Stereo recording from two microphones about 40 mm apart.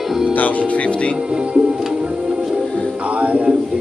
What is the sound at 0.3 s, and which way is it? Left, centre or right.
Speech, left.